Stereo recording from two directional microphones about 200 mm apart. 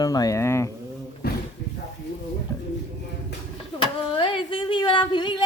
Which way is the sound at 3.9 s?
25° left (ahead or behind).